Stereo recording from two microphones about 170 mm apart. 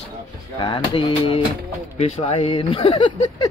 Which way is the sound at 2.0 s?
35° left (ahead or behind).